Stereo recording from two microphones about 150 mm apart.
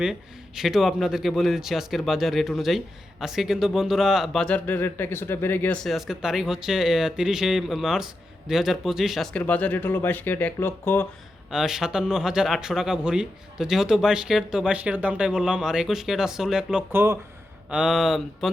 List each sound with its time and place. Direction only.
0.0 s a man's voice: 5° right (ahead or behind); by 11.0 s 15° left (ahead or behind)
11.5 s a man's voice: 5° right (ahead or behind)
16.9 s speech: 15° right (ahead or behind)
17.7 s a man's voice: 5° right (ahead or behind)